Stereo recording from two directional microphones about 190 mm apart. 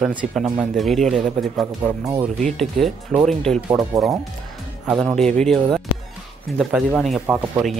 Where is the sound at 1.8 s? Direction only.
15° right (ahead or behind).